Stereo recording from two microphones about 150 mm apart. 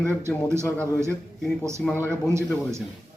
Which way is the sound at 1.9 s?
15° right (ahead or behind).